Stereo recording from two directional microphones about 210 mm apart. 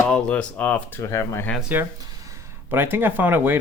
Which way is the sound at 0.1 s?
5° left (ahead or behind).